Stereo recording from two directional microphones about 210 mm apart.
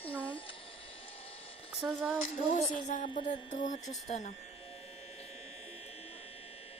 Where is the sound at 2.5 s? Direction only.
35° left (ahead or behind).